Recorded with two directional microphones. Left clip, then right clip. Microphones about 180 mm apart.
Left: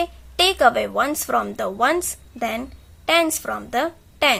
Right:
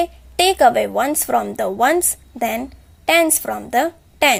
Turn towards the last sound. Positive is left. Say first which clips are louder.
# right 3 dB
turn(degrees=-25)  # may be behind; listen again after turning